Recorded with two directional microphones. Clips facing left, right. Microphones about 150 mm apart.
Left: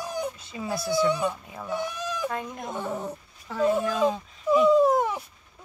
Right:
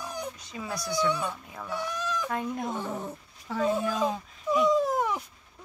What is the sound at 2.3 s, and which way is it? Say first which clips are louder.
Speech: right 2 dB; 5° right (ahead or behind).